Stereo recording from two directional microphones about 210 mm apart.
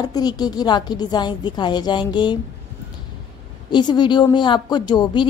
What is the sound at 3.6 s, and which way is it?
A woman's voice, 20° left (ahead or behind).